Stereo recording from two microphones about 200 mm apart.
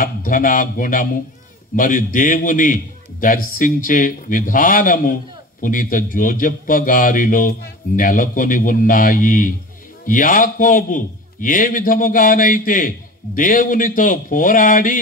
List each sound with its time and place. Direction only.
0.0 s a man's voice: 40° left (ahead or behind)